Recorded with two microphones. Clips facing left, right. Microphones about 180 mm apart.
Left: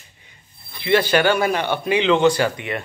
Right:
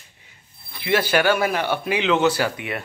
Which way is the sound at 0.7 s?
5° right (ahead or behind).